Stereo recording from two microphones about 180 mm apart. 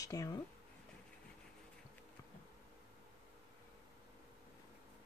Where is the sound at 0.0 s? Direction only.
20° left (ahead or behind).